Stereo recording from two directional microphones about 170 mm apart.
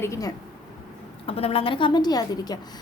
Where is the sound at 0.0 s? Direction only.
20° left (ahead or behind).